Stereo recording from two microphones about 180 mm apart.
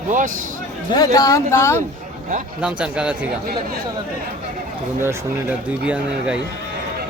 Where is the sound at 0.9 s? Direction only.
20° left (ahead or behind).